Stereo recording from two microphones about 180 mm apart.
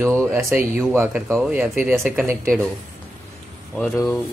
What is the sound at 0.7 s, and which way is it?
Speech, 10° right (ahead or behind).